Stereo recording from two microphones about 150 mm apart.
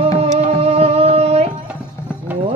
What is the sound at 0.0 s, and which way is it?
Music, 45° right (ahead or behind).